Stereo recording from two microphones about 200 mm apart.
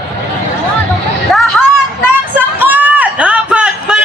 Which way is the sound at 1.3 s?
Centre (ahead or behind).